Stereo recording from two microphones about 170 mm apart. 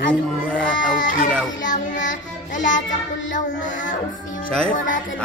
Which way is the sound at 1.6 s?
50° left (ahead or behind).